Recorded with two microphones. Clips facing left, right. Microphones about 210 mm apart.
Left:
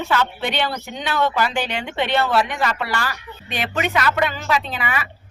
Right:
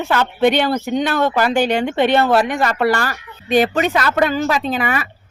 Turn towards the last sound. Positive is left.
turn(degrees=-45)  # may be behind; listen again after turning